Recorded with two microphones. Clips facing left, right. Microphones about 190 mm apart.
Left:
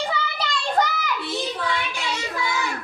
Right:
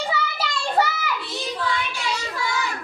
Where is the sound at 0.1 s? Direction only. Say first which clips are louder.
Even; 5° right (ahead or behind).